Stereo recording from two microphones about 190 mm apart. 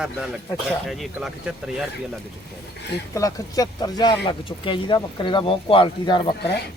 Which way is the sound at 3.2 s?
20° left (ahead or behind).